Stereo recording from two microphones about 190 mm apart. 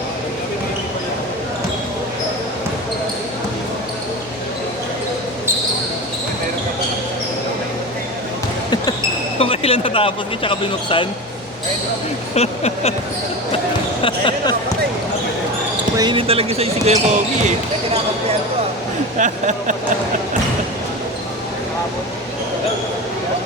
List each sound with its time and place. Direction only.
9.4 s speech: 30° left (ahead or behind)
12.3 s a sound: 35° left (ahead or behind)
14.0 s basketball bounce: 25° left (ahead or behind)
16.0 s speech: 25° right (ahead or behind)
19.2 s speech: 40° right (ahead or behind)